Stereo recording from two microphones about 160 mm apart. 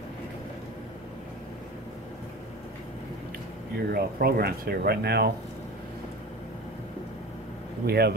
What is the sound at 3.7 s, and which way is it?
Speech, 75° right (ahead or behind).